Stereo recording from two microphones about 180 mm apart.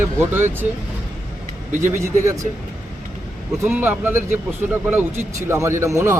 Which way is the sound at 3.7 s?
10° right (ahead or behind).